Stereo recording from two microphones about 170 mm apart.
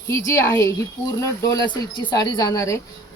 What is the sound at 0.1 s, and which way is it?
Speech, 15° left (ahead or behind).